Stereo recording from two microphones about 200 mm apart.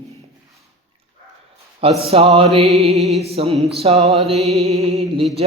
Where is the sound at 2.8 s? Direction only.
30° right (ahead or behind).